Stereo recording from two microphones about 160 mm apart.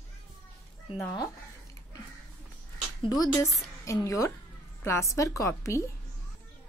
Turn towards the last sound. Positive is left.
turn(degrees=20)  # may be behind; listen again after turning